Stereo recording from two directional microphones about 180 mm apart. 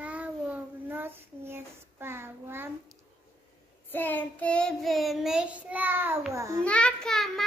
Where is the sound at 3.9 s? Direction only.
10° left (ahead or behind); by 6.6 s 15° right (ahead or behind).